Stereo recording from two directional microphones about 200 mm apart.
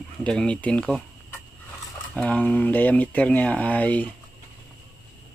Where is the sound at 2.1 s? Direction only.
5° left (ahead or behind).